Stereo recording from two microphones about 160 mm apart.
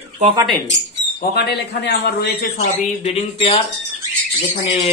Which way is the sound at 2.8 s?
40° left (ahead or behind).